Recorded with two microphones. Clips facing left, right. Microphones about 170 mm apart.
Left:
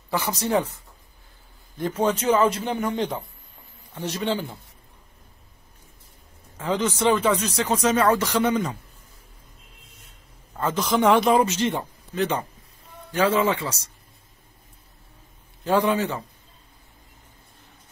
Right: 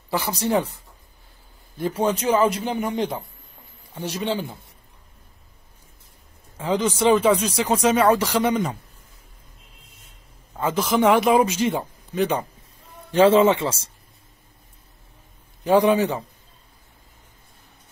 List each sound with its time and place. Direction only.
0.1 s speech: 35° right (ahead or behind)
1.8 s speech: 10° right (ahead or behind)
6.6 s speech: 10° right (ahead or behind)
10.5 s speech: 10° right (ahead or behind)
13.1 s speech: 25° right (ahead or behind)
15.6 s speech: 15° right (ahead or behind)